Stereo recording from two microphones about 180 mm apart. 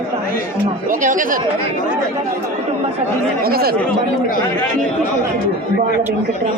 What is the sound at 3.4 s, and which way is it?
Speech, 55° right (ahead or behind).